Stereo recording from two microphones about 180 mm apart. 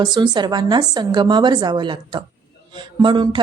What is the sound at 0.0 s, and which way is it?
Speech, 25° right (ahead or behind).